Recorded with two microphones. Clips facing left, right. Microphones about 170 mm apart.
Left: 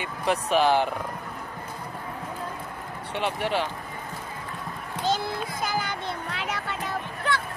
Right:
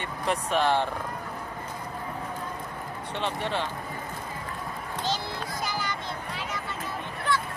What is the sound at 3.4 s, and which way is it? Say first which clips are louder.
Speech: left 5 dB; 25° right (ahead or behind).